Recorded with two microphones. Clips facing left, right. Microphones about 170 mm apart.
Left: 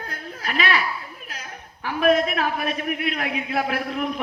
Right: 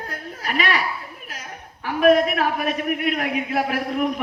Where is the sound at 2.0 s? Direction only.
45° right (ahead or behind).